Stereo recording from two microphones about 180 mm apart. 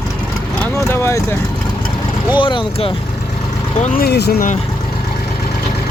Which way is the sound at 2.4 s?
25° left (ahead or behind).